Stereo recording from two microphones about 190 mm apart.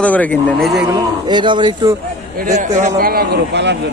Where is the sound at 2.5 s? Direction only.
40° right (ahead or behind).